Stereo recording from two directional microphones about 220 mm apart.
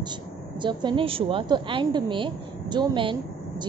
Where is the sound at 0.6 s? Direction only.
20° right (ahead or behind).